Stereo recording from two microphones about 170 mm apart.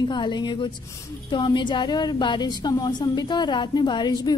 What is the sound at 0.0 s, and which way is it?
A woman's voice, 25° left (ahead or behind).